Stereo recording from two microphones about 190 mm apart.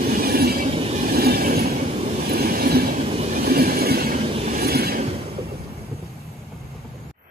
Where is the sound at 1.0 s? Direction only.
50° right (ahead or behind).